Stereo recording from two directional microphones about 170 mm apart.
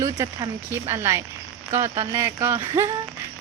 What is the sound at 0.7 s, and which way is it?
Speech, 15° right (ahead or behind).